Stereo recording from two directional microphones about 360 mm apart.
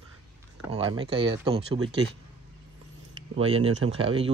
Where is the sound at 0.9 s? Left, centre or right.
Centre.